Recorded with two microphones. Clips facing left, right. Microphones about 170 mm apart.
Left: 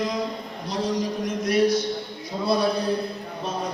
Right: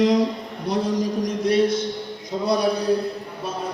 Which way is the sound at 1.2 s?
30° right (ahead or behind).